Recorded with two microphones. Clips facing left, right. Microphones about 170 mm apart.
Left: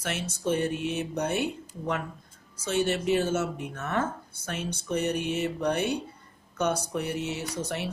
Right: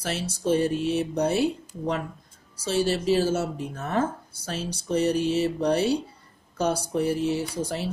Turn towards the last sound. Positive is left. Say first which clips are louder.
# right 4 dB
turn(degrees=-30)  # may be behind; listen again after turning